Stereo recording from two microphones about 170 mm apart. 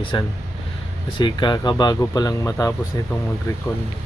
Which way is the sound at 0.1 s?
25° left (ahead or behind).